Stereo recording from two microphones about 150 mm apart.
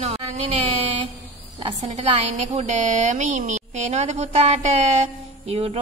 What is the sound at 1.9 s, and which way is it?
A woman's voice, 50° right (ahead or behind).